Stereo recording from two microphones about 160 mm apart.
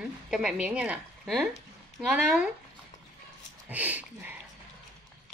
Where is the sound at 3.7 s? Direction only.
10° right (ahead or behind).